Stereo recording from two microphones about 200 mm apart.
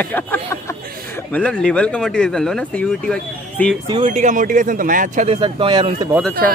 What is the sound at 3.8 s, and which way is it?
Speech, 30° right (ahead or behind).